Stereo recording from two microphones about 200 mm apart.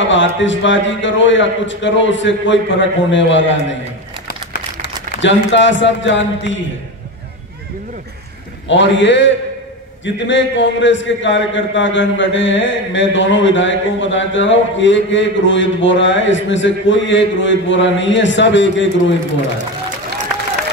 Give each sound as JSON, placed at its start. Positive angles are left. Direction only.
{"t": 0.0, "sound": "a man's voice", "side_deg": 65}
{"t": 5.2, "sound": "a man's voice", "side_deg": 65}
{"t": 8.6, "sound": "a man's voice", "side_deg": 65}